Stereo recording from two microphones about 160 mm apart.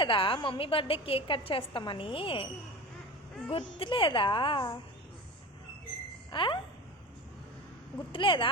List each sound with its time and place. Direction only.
0.0 s a woman's voice: 30° left (ahead or behind)
3.8 s a woman's voice: 30° left (ahead or behind)
6.3 s a woman's voice: 30° left (ahead or behind)
8.1 s a woman's voice: 30° left (ahead or behind)